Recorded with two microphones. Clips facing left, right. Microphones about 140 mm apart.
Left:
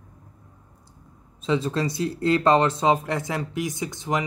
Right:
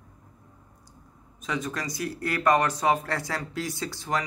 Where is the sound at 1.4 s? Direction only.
25° left (ahead or behind).